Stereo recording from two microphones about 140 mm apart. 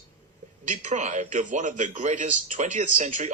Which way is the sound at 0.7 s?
60° right (ahead or behind).